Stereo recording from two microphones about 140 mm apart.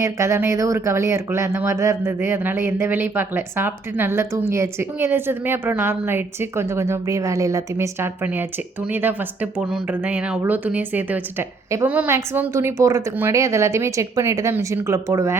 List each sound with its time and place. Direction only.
0.0 s speech: 20° right (ahead or behind)